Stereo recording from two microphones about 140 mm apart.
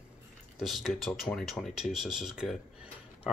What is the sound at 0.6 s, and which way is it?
Speech, centre (ahead or behind).